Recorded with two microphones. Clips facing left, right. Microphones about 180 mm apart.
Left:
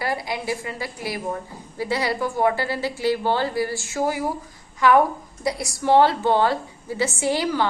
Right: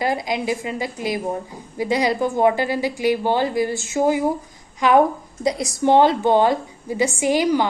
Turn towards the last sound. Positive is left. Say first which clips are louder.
# right 4 dB
turn(degrees=-15)  # may be behind; listen again after turning